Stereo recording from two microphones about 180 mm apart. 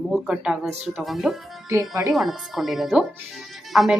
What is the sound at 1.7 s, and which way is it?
Speech, 15° right (ahead or behind).